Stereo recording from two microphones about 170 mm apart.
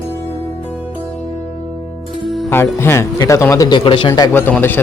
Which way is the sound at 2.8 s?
15° left (ahead or behind).